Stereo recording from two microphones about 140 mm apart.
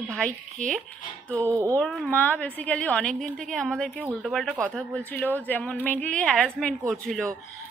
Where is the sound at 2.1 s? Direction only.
10° left (ahead or behind).